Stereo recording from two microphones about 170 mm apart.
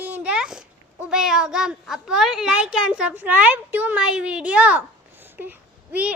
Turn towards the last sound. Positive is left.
turn(degrees=-10)  # may be behind; listen again after turning